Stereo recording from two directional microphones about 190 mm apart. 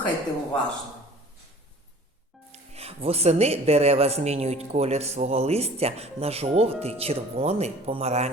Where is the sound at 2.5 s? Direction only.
30° right (ahead or behind).